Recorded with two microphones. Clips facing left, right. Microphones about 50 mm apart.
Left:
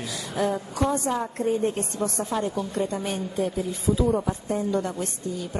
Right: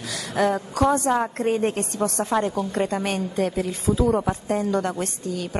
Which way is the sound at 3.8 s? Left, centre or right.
Right.